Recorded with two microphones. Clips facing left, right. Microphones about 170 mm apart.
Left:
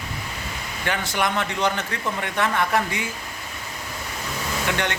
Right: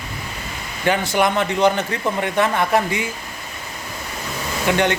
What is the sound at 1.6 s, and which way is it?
Speech, 30° right (ahead or behind).